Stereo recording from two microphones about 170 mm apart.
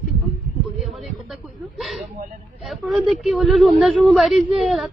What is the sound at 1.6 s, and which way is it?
A woman's voice, centre (ahead or behind).